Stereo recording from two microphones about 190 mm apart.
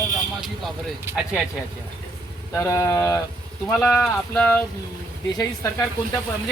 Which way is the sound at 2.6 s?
15° left (ahead or behind).